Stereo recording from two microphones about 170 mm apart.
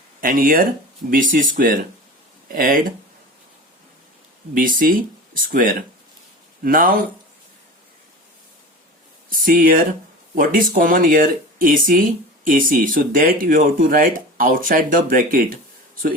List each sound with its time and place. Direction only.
0.2 s speech: 55° right (ahead or behind)
4.5 s speech: 55° right (ahead or behind)
9.3 s speech: 55° right (ahead or behind)